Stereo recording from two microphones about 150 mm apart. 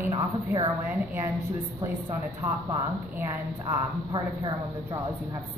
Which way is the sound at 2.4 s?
15° right (ahead or behind).